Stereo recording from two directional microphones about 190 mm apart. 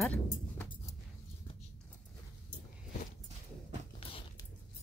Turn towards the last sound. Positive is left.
turn(degrees=30)  # may be behind; listen again after turning